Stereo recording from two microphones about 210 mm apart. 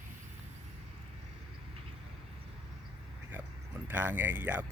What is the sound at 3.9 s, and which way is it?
Speech, 10° right (ahead or behind).